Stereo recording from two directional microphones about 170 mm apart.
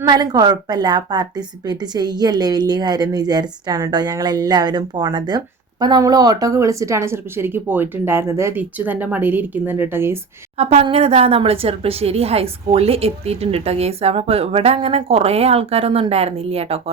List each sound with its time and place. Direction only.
0.0 s a woman's voice: 25° right (ahead or behind)
10.6 s speech: 40° right (ahead or behind)